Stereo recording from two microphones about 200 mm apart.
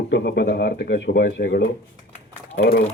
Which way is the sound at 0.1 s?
55° left (ahead or behind).